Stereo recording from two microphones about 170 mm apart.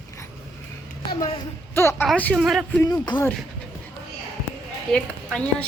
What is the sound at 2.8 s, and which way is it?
Speech, 25° left (ahead or behind).